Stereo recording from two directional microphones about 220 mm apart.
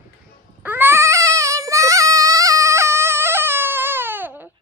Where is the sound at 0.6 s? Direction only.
10° right (ahead or behind).